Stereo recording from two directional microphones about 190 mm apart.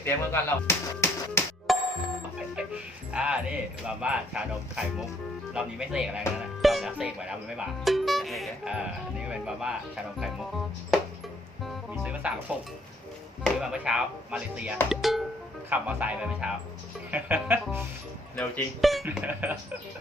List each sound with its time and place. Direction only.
0.0 s speech: 15° left (ahead or behind)
1.7 s music: centre (ahead or behind)
3.8 s speech: 5° right (ahead or behind)
11.6 s speech: 5° right (ahead or behind)
18.3 s speech: centre (ahead or behind)